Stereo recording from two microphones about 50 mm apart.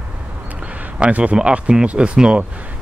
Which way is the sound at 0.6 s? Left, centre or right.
Right.